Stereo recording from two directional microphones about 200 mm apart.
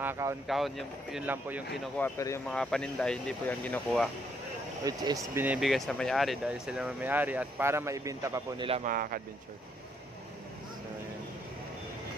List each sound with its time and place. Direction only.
0.0 s speech: 10° right (ahead or behind)
0.5 s speech: centre (ahead or behind)
2.0 s speech: 10° left (ahead or behind)
2.5 s speech: 5° left (ahead or behind)
4.8 s speech: 15° right (ahead or behind)
8.8 s speech: 45° right (ahead or behind)